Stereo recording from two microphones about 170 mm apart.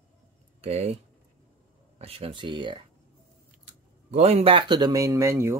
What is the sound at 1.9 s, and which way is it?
Speech, 35° right (ahead or behind).